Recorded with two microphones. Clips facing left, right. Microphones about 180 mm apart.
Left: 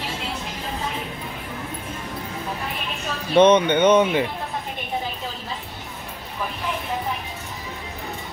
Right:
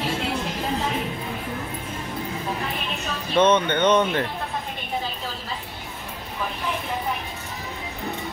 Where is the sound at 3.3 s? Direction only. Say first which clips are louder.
Left 4 dB; 15° left (ahead or behind).